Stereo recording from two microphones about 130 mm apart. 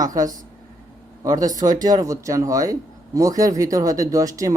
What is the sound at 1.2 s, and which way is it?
Speech, 30° right (ahead or behind).